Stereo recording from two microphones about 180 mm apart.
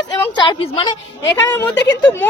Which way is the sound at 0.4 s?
25° left (ahead or behind).